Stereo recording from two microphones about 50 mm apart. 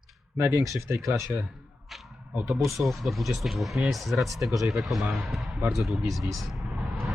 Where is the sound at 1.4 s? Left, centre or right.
Centre.